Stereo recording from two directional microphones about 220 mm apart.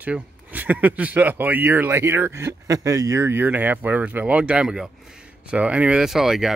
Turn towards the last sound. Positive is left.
turn(degrees=0)  # may be behind; listen again after turning